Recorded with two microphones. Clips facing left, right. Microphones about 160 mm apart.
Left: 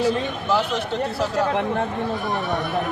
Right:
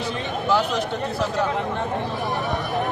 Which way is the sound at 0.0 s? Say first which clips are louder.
Left 4 dB; centre (ahead or behind).